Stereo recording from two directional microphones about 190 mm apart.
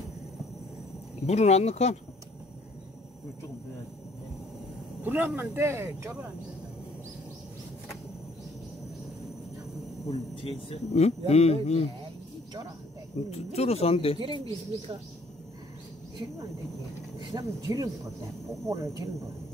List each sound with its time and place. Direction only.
1.2 s speech: 35° left (ahead or behind)
5.0 s speech: 10° right (ahead or behind)
10.0 s speech: 30° left (ahead or behind)
13.3 s speech: 35° left (ahead or behind)
14.2 s speech: 25° right (ahead or behind)
17.2 s speech: 20° right (ahead or behind)